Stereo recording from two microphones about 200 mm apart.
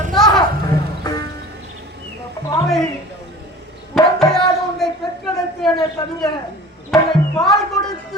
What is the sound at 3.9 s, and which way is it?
Music, centre (ahead or behind).